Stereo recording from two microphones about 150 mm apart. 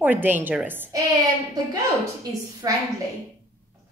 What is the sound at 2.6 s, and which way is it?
Speech, 25° right (ahead or behind).